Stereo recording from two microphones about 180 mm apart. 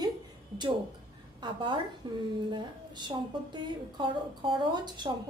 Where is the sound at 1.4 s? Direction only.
25° right (ahead or behind).